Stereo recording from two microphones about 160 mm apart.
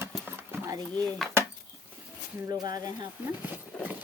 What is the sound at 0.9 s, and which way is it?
Speech, 10° left (ahead or behind).